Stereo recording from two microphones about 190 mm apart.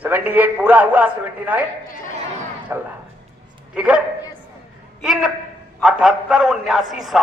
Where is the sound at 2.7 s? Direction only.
10° right (ahead or behind).